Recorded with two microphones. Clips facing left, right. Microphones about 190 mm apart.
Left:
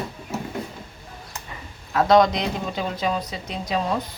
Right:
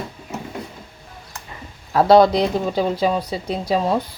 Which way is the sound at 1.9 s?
35° right (ahead or behind).